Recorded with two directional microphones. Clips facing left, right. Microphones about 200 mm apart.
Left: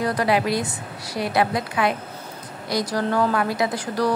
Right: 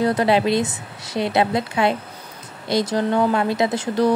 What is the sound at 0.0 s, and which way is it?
Speech, 25° right (ahead or behind).